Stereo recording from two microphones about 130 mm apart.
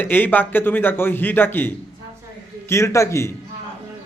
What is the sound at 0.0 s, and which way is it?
A man's voice, 15° left (ahead or behind).